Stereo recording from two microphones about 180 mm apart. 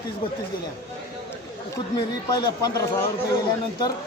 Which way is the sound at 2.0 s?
25° left (ahead or behind).